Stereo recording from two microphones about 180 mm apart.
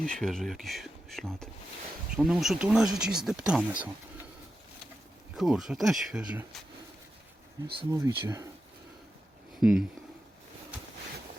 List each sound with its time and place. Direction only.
0.0 s speech: 5° left (ahead or behind)
5.4 s speech: centre (ahead or behind)
7.8 s speech: 20° right (ahead or behind)
9.6 s speech: 5° right (ahead or behind)